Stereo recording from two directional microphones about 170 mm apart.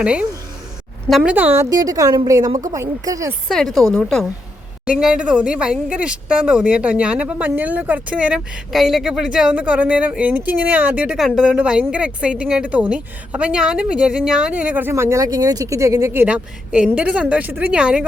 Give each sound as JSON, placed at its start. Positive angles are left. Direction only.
{"t": 0.0, "sound": "a woman's voice", "side_deg": -5}
{"t": 3.5, "sound": "speech", "side_deg": 0}